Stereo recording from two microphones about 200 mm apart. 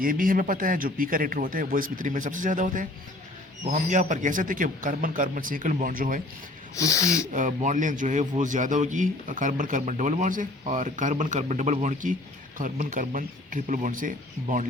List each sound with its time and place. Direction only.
0.0 s a man's voice: 45° right (ahead or behind)
6.7 s speech: 15° left (ahead or behind)
7.3 s speech: 40° right (ahead or behind)